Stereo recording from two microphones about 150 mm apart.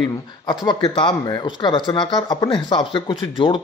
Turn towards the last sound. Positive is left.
turn(degrees=35)  # may be behind; listen again after turning